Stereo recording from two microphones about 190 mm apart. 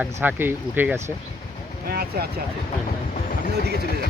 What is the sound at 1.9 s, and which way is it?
Speech, 55° right (ahead or behind).